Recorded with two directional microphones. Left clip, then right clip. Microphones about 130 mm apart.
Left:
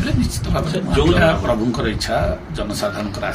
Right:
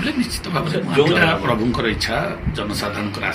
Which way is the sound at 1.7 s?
15° left (ahead or behind).